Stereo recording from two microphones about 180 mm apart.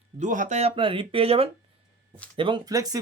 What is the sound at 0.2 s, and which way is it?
Speech, 45° right (ahead or behind).